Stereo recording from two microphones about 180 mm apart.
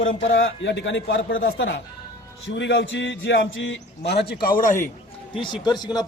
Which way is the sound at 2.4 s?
80° left.